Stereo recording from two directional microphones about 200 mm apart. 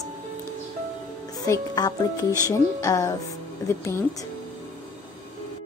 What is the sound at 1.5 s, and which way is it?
Speech, 20° left (ahead or behind).